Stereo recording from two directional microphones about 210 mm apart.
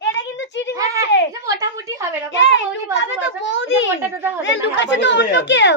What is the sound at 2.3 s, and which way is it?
A child's voice, 60° left (ahead or behind).